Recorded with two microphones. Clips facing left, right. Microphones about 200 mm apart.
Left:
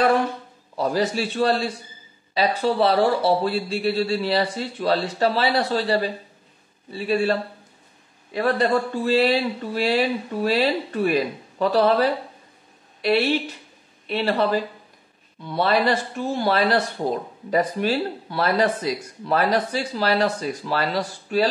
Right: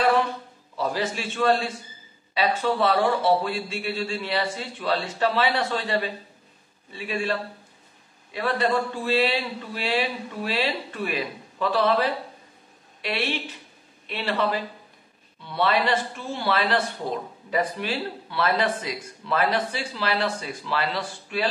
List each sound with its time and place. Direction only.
0.7 s speech: 40° left (ahead or behind)
8.4 s speech: 40° left (ahead or behind)